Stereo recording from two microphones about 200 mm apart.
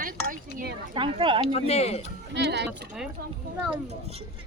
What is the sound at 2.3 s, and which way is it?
Speech, 60° right (ahead or behind).